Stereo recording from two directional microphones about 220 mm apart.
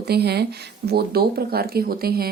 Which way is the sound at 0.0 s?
45° right (ahead or behind).